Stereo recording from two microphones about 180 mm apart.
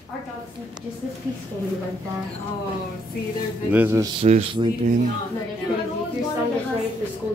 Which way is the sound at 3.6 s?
10° right (ahead or behind).